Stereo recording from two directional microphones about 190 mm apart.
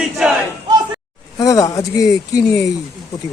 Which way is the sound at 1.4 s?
20° left (ahead or behind).